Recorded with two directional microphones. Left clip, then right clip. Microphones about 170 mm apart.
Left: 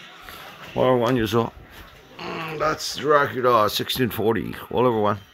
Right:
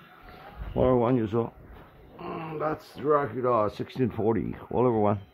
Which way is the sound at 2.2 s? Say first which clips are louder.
Left 6 dB; 15° left (ahead or behind).